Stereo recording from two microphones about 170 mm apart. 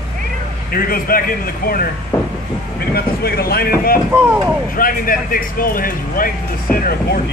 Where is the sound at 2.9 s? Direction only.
65° left (ahead or behind).